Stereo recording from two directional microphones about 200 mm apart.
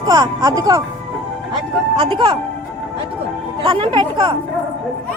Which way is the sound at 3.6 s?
25° right (ahead or behind).